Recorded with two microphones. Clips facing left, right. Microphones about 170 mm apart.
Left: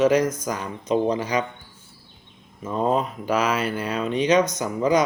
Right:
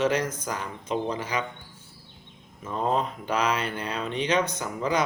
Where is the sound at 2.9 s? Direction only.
10° left (ahead or behind).